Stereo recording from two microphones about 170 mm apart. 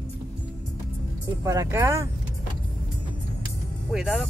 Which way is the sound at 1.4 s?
15° right (ahead or behind).